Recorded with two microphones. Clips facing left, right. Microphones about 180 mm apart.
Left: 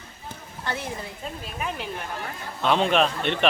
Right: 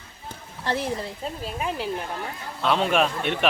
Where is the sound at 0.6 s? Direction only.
30° right (ahead or behind).